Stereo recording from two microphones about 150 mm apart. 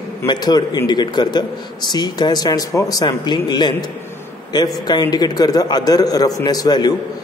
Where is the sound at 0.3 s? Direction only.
25° left (ahead or behind).